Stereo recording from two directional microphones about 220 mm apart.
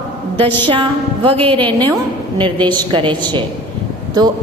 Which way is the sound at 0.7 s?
25° right (ahead or behind).